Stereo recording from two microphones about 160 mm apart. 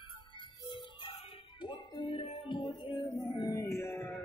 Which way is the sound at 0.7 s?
30° left (ahead or behind).